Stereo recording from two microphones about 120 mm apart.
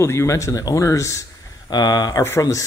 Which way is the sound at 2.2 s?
25° left (ahead or behind).